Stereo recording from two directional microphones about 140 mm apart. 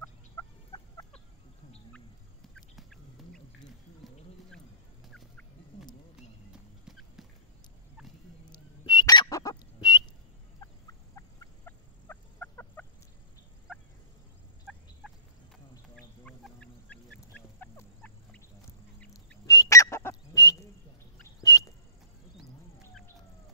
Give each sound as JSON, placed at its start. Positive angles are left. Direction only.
{"t": 0.0, "sound": "fowl", "side_deg": 25}
{"t": 2.5, "sound": "duck", "side_deg": 5}
{"t": 4.0, "sound": "a sound", "side_deg": 0}
{"t": 6.1, "sound": "clip-clop", "side_deg": -5}
{"t": 8.5, "sound": "fowl", "side_deg": 30}
{"t": 14.7, "sound": "fowl", "side_deg": 5}
{"t": 16.3, "sound": "fowl", "side_deg": 10}
{"t": 19.4, "sound": "fowl", "side_deg": 25}
{"t": 21.4, "sound": "a sound", "side_deg": 25}